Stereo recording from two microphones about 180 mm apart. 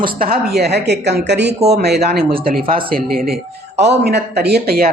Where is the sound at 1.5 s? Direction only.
35° right (ahead or behind).